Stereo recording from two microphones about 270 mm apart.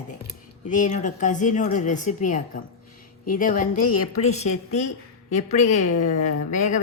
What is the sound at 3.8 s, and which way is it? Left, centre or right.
Speech, left.